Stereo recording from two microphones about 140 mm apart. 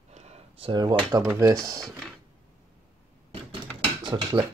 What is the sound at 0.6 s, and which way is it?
Speech, 35° right (ahead or behind).